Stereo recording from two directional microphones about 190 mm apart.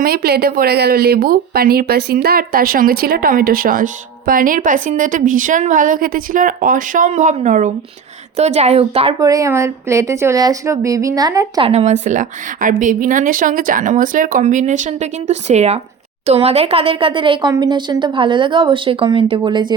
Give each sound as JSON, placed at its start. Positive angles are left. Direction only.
{"t": 0.0, "sound": "a woman's voice", "side_deg": -50}
{"t": 9.2, "sound": "a woman's voice", "side_deg": -20}
{"t": 11.7, "sound": "a woman's voice", "side_deg": -35}